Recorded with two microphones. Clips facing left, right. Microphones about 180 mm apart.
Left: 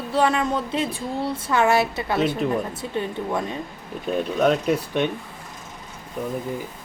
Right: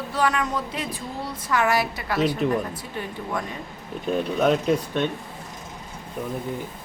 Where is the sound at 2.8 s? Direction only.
25° left (ahead or behind).